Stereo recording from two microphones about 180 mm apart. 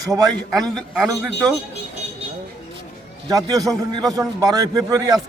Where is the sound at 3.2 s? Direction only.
20° right (ahead or behind).